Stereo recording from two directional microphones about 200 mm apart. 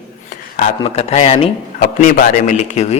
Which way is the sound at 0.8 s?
30° left (ahead or behind).